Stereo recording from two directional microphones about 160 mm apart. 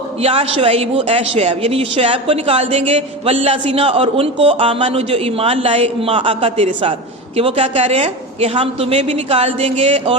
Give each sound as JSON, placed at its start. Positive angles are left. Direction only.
{"t": 0.2, "sound": "a woman's voice", "side_deg": -35}